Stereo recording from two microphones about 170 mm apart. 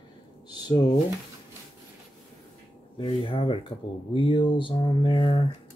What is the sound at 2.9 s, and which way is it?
Speech, 30° left (ahead or behind).